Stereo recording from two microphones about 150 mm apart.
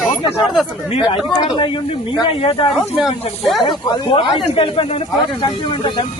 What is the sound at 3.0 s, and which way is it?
Speech, 5° right (ahead or behind).